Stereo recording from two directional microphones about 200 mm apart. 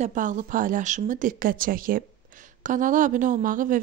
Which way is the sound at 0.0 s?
40° right (ahead or behind).